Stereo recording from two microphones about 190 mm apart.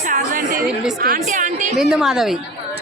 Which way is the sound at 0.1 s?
45° right (ahead or behind).